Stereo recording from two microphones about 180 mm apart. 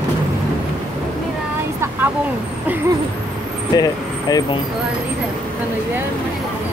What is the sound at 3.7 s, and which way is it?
Speech, 20° left (ahead or behind).